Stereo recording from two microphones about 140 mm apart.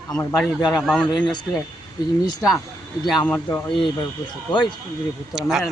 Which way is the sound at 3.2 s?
15° left (ahead or behind).